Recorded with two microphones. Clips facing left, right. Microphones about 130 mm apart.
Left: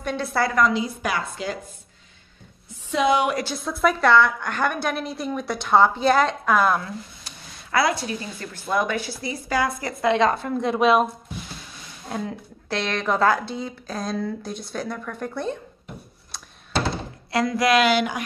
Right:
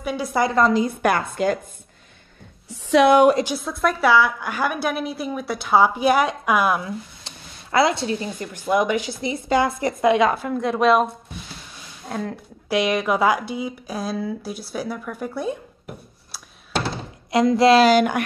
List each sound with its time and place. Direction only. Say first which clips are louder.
0.0 s a woman's voice: right 2 dB; 10° right (ahead or behind)
0.6 s a woman's voice: right 3 dB; 35° right (ahead or behind)
0.8 s a woman's voice: right 6 dB; 55° right (ahead or behind)
2.7 s a sound: right 6 dB; 80° right
3.5 s a woman's voice: left 1 dB; centre (ahead or behind)
7.2 s a sound: right 1 dB; 25° right (ahead or behind)
8.5 s a woman's voice: right 4 dB; 15° right (ahead or behind); by 11.1 s centre (ahead or behind)
12.1 s speech: right 1 dB; centre (ahead or behind)
12.6 s a woman's voice: right 5 dB; 10° right (ahead or behind)
17.3 s speech: right 5 dB; 25° right (ahead or behind)